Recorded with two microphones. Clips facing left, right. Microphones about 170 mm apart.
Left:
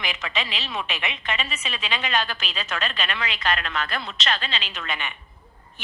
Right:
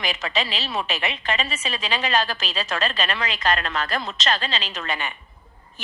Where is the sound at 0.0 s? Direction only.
40° right (ahead or behind).